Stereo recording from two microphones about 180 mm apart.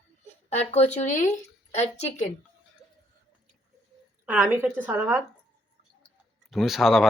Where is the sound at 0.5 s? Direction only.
35° left (ahead or behind).